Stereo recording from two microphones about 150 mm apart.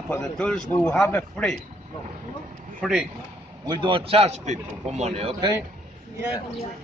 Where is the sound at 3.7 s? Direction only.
35° right (ahead or behind).